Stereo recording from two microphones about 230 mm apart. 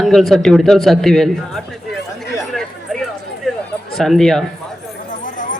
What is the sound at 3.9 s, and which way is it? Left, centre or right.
Speech, centre.